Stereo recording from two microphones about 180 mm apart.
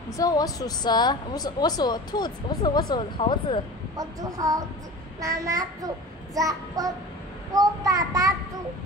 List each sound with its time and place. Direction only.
0.2 s speech: 20° left (ahead or behind)
3.9 s speech: 20° right (ahead or behind)